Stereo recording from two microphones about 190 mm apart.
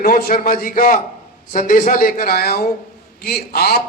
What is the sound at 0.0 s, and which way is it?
A man's voice, 45° left (ahead or behind).